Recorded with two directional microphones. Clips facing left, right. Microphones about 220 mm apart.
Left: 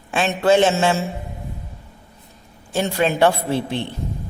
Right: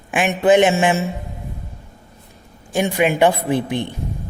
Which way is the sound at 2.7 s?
15° right (ahead or behind).